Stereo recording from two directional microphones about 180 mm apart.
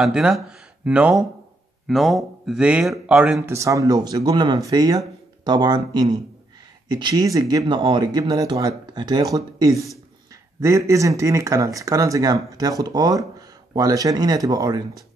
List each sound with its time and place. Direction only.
0.0 s a man's voice: 5° right (ahead or behind); by 14.8 s 20° right (ahead or behind)